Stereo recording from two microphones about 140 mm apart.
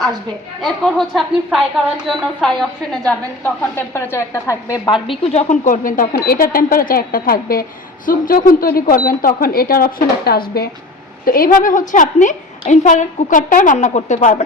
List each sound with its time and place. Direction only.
0.6 s a woman's voice: centre (ahead or behind)
3.1 s a woman's voice: 15° left (ahead or behind)
5.2 s speech: 50° left (ahead or behind)
5.6 s speech: 75° left (ahead or behind)
8.0 s a woman's voice: 75° left (ahead or behind); by 14.4 s 60° left (ahead or behind)